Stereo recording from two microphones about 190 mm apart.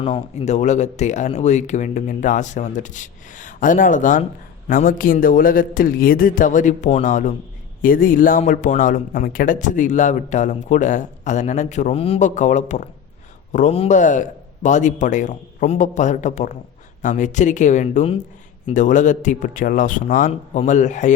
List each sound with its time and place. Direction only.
0.0 s a man's voice: 35° left (ahead or behind)